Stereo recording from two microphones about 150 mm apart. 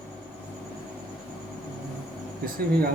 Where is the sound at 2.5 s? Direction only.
90° right.